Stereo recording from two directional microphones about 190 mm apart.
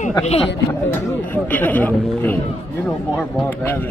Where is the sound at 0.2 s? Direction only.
30° left (ahead or behind).